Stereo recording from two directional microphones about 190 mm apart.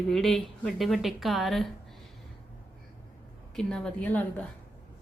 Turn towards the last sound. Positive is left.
turn(degrees=10)  # may be behind; listen again after turning